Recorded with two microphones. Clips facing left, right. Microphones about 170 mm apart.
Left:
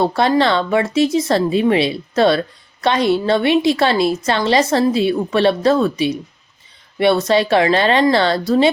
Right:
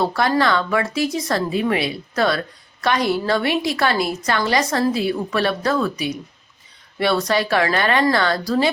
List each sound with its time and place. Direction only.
0.0 s a woman's voice: 25° left (ahead or behind)